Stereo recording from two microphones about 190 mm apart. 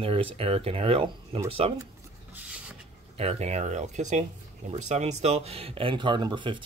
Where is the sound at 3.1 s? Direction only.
35° right (ahead or behind).